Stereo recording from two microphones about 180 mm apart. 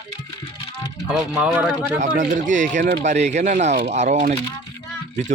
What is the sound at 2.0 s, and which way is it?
Speech, 45° right (ahead or behind).